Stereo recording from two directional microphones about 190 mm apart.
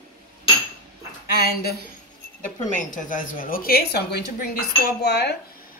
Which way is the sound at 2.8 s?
45° left (ahead or behind).